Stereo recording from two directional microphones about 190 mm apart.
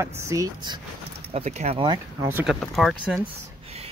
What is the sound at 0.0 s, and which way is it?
Speech, 15° right (ahead or behind).